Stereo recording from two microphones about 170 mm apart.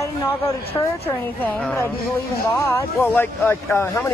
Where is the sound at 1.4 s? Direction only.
10° left (ahead or behind).